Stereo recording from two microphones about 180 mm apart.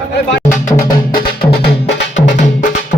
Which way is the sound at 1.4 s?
60° left (ahead or behind).